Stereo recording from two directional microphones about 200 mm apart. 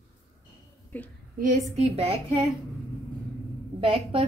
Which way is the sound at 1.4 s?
35° right (ahead or behind).